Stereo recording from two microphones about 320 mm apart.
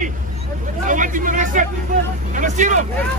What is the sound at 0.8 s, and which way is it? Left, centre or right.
Hubbub, right.